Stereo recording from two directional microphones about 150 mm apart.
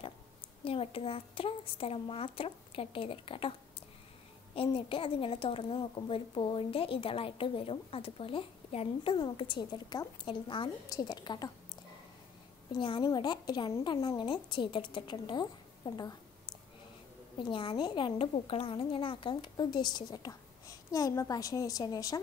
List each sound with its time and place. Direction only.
0.7 s a child's voice: 40° left (ahead or behind)
4.6 s a child's voice: 35° left (ahead or behind)
12.7 s a child's voice: 35° left (ahead or behind)